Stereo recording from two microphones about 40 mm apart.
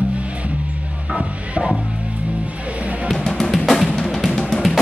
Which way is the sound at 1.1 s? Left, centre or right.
Right.